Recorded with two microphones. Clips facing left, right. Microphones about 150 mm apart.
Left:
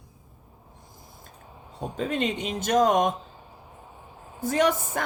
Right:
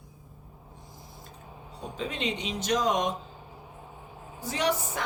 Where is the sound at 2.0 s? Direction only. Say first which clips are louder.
Left 5 dB; 50° left (ahead or behind).